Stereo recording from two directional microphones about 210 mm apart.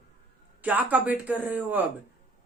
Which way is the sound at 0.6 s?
10° right (ahead or behind).